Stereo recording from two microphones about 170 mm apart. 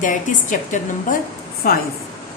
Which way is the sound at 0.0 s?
50° left (ahead or behind).